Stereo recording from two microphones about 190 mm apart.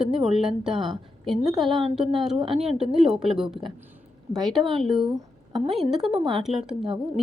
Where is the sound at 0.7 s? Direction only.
25° right (ahead or behind).